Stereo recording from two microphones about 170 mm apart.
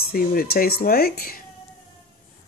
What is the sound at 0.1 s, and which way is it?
Speech, 60° left (ahead or behind).